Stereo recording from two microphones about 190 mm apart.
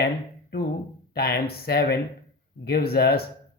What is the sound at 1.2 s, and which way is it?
Speech, 55° left (ahead or behind).